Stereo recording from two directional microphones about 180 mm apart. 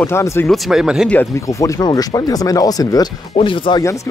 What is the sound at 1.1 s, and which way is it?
Speech, 15° left (ahead or behind).